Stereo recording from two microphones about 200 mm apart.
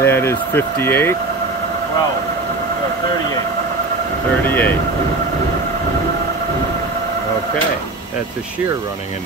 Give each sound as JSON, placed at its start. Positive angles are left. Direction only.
{"t": 0.0, "sound": "speech", "side_deg": 10}
{"t": 4.5, "sound": "speech", "side_deg": 10}